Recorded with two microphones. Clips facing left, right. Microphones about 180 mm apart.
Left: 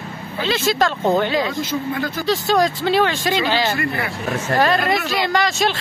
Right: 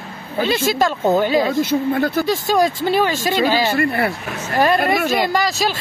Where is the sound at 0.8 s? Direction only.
10° right (ahead or behind).